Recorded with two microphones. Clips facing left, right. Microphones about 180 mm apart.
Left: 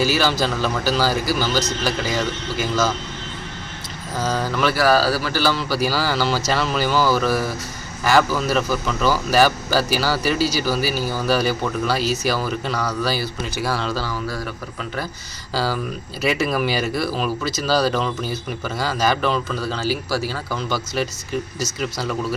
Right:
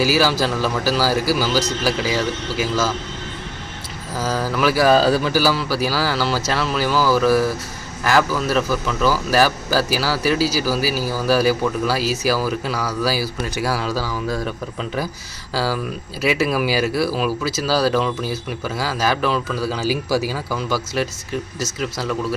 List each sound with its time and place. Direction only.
0.0 s a man's voice: 5° right (ahead or behind)
4.2 s a man's voice: 5° right (ahead or behind)
4.8 s speech: 20° right (ahead or behind)
5.4 s a man's voice: 5° right (ahead or behind)
15.5 s a man's voice: centre (ahead or behind)